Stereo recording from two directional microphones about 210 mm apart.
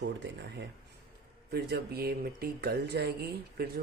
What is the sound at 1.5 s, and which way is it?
Speech, 50° right (ahead or behind).